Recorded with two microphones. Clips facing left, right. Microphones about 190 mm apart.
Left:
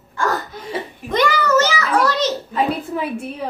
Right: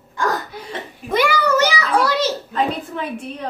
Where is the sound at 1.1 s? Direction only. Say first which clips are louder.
Left 1 dB; 10° right (ahead or behind).